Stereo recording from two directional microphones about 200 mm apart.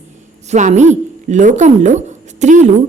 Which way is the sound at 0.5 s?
35° right (ahead or behind).